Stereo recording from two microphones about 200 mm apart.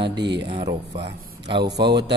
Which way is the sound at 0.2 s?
60° right (ahead or behind).